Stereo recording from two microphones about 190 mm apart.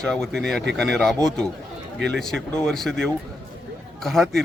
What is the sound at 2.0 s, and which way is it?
Speech, 65° right (ahead or behind).